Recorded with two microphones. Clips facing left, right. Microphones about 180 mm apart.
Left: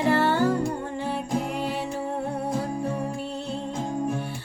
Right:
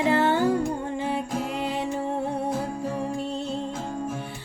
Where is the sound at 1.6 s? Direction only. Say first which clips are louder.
Right 1 dB; 20° right (ahead or behind).